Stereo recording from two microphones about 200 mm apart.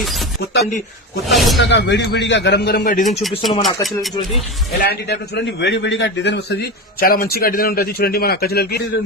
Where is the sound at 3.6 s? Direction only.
Centre (ahead or behind).